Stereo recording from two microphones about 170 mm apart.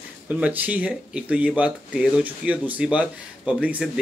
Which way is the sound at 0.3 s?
10° right (ahead or behind).